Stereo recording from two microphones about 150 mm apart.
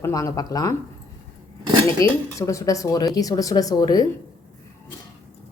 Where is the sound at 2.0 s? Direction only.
20° left (ahead or behind).